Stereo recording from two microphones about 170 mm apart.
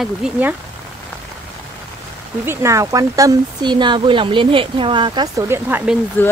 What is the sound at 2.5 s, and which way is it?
Speech, 15° right (ahead or behind).